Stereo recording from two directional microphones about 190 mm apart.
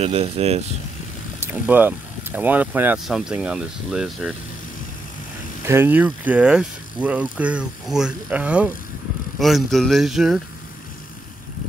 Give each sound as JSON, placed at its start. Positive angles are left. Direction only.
{"t": 0.0, "sound": "speech", "side_deg": -30}
{"t": 1.4, "sound": "speech", "side_deg": -10}
{"t": 5.7, "sound": "speech", "side_deg": -10}